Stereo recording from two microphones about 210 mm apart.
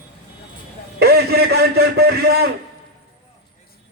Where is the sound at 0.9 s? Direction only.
50° right (ahead or behind).